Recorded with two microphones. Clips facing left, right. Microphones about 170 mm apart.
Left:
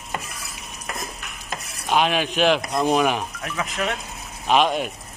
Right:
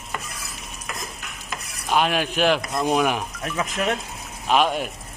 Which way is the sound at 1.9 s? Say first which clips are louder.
Left 1 dB; 5° right (ahead or behind).